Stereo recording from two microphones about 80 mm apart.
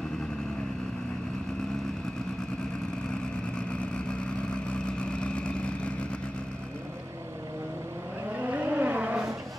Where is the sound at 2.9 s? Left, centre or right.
Centre.